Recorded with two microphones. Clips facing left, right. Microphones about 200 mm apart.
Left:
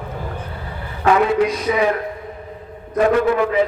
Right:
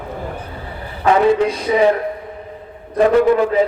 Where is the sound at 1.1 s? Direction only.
30° right (ahead or behind).